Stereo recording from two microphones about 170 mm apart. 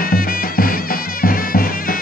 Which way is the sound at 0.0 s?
60° left (ahead or behind).